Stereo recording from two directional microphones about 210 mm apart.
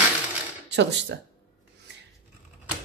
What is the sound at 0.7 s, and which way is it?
Speech, 55° right (ahead or behind).